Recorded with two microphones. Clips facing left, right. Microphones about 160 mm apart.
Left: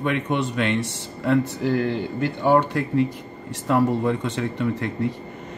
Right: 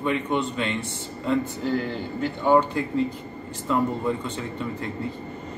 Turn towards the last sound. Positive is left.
turn(degrees=70)  # may be behind; listen again after turning